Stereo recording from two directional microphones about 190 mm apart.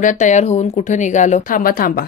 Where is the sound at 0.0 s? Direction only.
40° left (ahead or behind).